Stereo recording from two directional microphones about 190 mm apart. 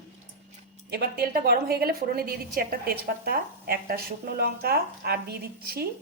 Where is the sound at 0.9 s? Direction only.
55° right (ahead or behind).